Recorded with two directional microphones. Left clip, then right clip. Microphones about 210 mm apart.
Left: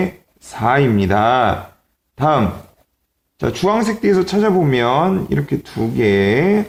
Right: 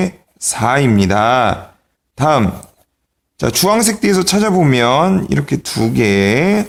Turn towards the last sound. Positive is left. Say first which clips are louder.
# right 1 dB
turn(degrees=-45)  # may be behind; listen again after turning